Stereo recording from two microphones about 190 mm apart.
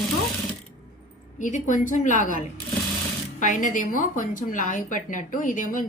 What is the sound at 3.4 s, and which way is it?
A woman's voice, 40° left (ahead or behind).